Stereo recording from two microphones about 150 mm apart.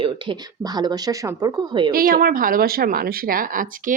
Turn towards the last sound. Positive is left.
turn(degrees=-65)  # may be behind; listen again after turning